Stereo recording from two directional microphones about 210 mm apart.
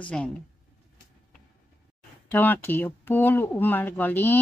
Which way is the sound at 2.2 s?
10° left (ahead or behind).